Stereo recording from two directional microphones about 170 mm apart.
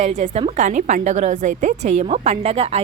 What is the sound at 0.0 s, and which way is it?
A woman's voice, 40° right (ahead or behind).